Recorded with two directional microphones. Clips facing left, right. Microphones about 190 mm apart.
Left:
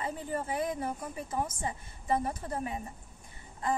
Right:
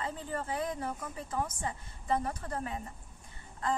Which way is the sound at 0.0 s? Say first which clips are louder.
Left 2 dB; 15° left (ahead or behind).